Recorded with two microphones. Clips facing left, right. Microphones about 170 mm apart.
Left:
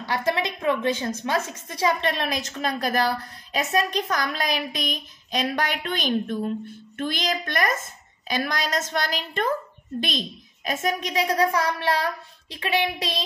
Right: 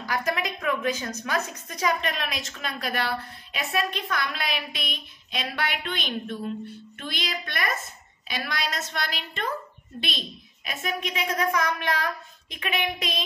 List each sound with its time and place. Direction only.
0.0 s a woman's voice: 30° left (ahead or behind)